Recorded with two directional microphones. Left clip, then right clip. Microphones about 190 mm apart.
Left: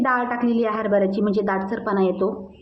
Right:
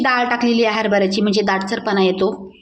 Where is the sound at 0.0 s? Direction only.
10° right (ahead or behind).